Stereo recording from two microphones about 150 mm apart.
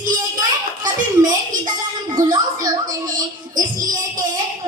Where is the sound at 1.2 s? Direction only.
30° right (ahead or behind).